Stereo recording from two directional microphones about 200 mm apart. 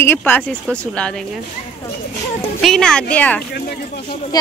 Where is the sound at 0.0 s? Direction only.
10° left (ahead or behind).